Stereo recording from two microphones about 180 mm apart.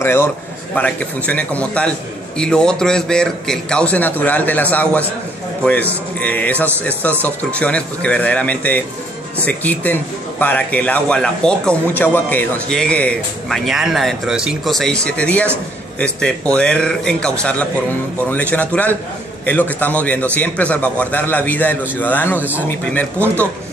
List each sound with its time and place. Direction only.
0.0 s a man's voice: 15° left (ahead or behind)